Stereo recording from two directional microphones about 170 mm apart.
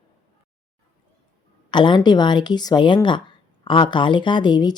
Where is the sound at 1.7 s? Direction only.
25° left (ahead or behind).